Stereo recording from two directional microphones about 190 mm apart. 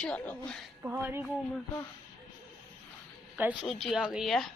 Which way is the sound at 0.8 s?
10° right (ahead or behind).